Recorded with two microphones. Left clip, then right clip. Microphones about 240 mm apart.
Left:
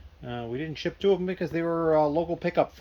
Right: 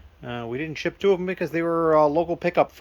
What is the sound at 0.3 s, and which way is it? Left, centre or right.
Speech, centre.